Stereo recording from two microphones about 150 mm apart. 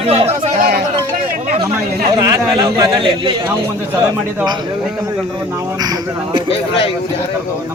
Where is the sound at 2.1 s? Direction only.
30° right (ahead or behind).